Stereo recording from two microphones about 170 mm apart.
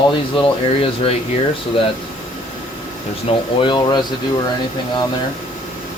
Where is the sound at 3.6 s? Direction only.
30° left (ahead or behind).